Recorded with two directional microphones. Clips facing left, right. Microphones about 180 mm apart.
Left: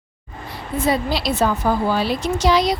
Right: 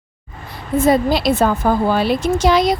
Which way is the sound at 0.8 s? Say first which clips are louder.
Right 6 dB; 50° right (ahead or behind).